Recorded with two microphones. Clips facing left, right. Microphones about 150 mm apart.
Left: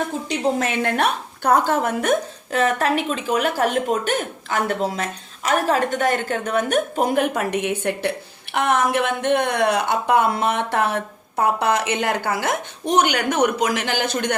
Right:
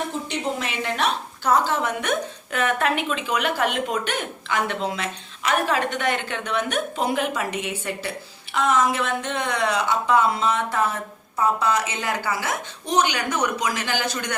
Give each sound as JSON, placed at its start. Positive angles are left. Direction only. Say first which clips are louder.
{"t": 0.6, "sound": "a woman's voice", "louder": "left 4 dB", "side_deg": 50}